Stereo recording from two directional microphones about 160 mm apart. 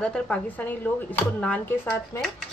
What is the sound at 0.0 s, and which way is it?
A woman's voice, 5° left (ahead or behind).